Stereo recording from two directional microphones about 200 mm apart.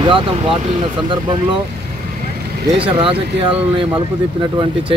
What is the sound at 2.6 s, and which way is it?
Speech, 25° right (ahead or behind).